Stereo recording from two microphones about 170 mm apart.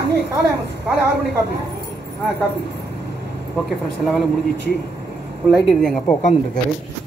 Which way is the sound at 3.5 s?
Centre (ahead or behind).